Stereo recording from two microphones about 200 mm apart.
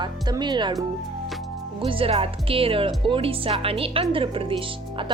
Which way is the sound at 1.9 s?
25° right (ahead or behind).